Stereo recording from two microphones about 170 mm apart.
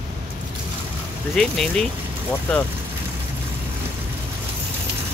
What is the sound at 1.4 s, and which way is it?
Speech, 5° left (ahead or behind).